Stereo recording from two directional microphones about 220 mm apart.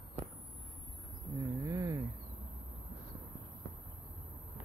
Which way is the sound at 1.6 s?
15° right (ahead or behind).